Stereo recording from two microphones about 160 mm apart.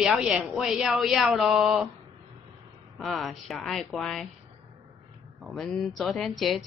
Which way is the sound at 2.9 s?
Centre (ahead or behind).